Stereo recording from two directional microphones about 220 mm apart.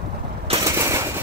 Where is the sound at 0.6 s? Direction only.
15° right (ahead or behind).